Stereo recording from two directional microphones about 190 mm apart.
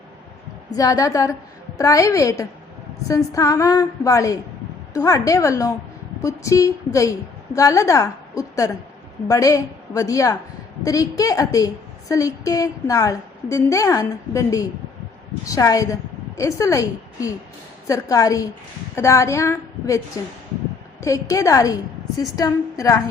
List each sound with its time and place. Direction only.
0.8 s a woman's voice: 20° left (ahead or behind)
21.0 s a woman's voice: 15° left (ahead or behind)